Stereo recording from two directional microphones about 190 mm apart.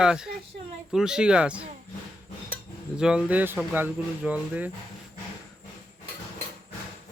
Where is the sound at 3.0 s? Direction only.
5° right (ahead or behind).